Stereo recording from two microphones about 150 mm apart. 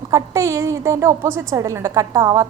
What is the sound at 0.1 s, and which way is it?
A woman's voice, 20° right (ahead or behind).